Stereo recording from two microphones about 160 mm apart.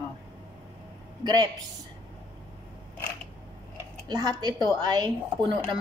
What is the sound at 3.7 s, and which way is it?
Speech, 25° right (ahead or behind).